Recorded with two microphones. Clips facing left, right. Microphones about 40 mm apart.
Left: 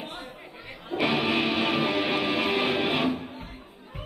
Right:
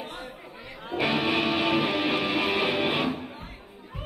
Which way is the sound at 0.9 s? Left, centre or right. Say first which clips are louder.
Even; centre.